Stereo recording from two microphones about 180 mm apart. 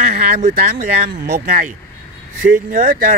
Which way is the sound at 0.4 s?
50° right (ahead or behind).